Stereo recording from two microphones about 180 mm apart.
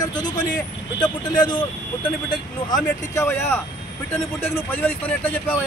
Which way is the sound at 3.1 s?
10° left (ahead or behind).